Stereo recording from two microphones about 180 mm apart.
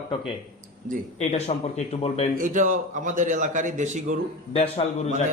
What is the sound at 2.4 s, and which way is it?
A man's voice, 45° right (ahead or behind).